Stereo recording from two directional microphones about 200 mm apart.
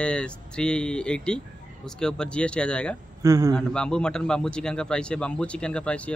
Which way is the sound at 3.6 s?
5° left (ahead or behind).